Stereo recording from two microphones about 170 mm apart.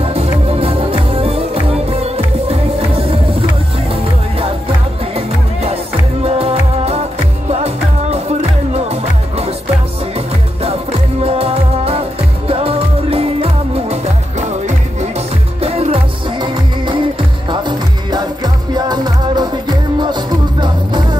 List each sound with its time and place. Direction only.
0.0 s music: 35° right (ahead or behind)
5.1 s music: 35° right (ahead or behind)
10.6 s music: 35° right (ahead or behind)